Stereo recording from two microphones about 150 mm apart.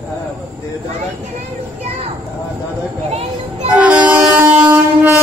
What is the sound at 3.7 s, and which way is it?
Train, 10° right (ahead or behind).